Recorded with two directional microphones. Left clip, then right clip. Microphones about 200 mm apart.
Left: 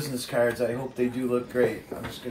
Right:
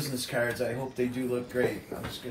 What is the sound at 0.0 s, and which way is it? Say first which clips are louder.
Speech: left 5 dB; 15° left (ahead or behind).